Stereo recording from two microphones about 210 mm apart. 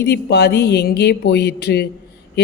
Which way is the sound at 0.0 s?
55° left (ahead or behind).